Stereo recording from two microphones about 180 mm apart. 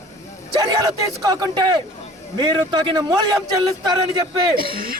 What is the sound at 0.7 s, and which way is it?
A man's voice, 20° right (ahead or behind).